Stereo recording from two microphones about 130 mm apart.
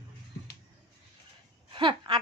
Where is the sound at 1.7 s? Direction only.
40° right (ahead or behind).